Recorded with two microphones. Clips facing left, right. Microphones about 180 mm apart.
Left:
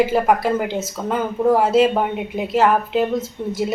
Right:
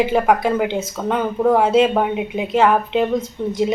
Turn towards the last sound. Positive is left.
turn(degrees=5)  # may be behind; listen again after turning